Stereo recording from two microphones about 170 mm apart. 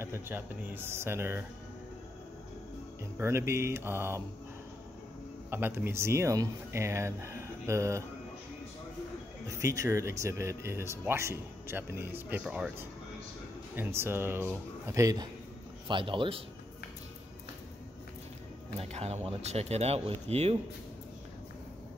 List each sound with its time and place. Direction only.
0.0 s speech: 15° right (ahead or behind)
3.2 s speech: 15° right (ahead or behind)
5.5 s speech: 10° right (ahead or behind)
9.5 s speech: 20° right (ahead or behind)
15.9 s a man's voice: 30° right (ahead or behind)
18.8 s speech: 40° right (ahead or behind)